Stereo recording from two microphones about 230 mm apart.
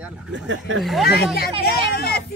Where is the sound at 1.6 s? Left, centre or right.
Left.